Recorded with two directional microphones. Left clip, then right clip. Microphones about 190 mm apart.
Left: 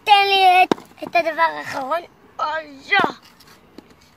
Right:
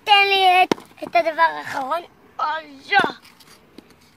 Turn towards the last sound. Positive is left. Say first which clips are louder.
# left 1 dB
turn(degrees=0)  # may be behind; listen again after turning